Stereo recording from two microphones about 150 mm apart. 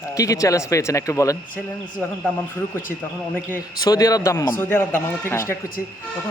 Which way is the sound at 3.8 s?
25° left (ahead or behind).